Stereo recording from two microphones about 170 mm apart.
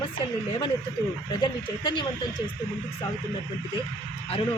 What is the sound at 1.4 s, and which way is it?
Speech, 25° left (ahead or behind).